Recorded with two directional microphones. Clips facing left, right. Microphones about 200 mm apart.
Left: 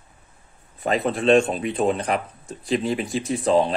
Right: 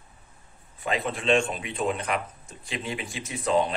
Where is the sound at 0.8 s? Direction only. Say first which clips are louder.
Left 6 dB; 40° left (ahead or behind).